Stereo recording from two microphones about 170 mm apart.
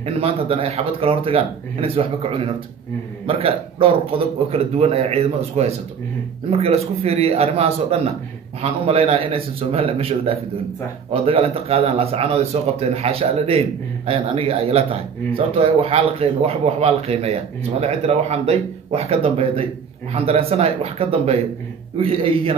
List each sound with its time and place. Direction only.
0.0 s speech: 35° right (ahead or behind)